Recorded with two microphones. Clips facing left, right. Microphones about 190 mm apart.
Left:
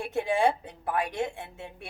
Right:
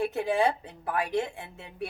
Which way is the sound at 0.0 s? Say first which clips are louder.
Even; centre (ahead or behind).